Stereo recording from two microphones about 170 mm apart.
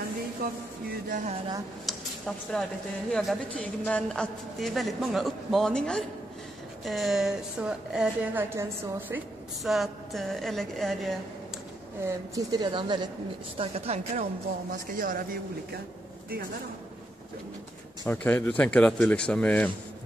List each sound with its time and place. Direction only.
1.9 s a sound: 5° left (ahead or behind)
3.1 s a woman's voice: centre (ahead or behind)
9.6 s a woman's voice: centre (ahead or behind)
12.0 s a woman's voice: 20° right (ahead or behind); by 14.2 s 40° right (ahead or behind)
14.7 s speech: 55° right (ahead or behind)
18.0 s speech: 10° left (ahead or behind)